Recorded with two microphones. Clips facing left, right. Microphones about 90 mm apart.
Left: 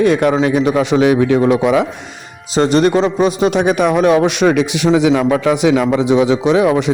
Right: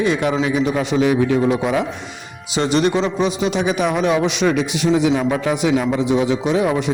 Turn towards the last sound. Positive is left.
turn(degrees=90)